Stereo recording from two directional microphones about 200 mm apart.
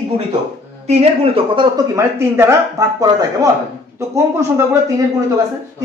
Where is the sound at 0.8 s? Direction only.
30° right (ahead or behind).